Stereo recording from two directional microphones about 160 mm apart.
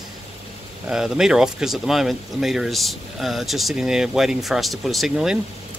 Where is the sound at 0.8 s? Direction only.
5° right (ahead or behind).